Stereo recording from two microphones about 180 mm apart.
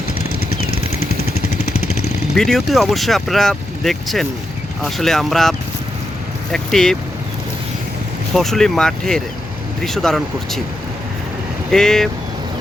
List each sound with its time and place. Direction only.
0.7 s vehicle: 40° left (ahead or behind)
2.3 s speech: centre (ahead or behind)
8.3 s speech: centre (ahead or behind)
11.7 s speech: centre (ahead or behind)